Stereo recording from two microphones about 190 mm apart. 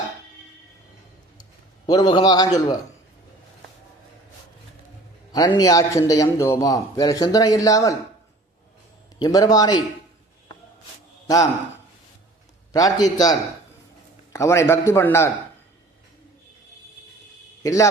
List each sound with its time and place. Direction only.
1.9 s a man's voice: 20° left (ahead or behind)
5.3 s a man's voice: 20° left (ahead or behind)
9.1 s a man's voice: 20° left (ahead or behind)
11.3 s a man's voice: 20° left (ahead or behind)
12.7 s a man's voice: 20° left (ahead or behind)
14.3 s a man's voice: 15° left (ahead or behind)
17.6 s a man's voice: 15° left (ahead or behind)